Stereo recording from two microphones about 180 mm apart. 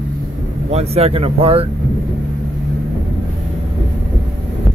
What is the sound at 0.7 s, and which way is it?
Speech, 35° right (ahead or behind).